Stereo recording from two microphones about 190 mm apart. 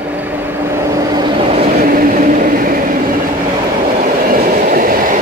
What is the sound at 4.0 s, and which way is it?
Train, 45° right (ahead or behind).